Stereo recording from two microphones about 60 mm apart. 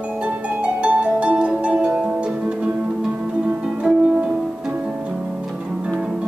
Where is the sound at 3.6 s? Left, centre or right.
Centre.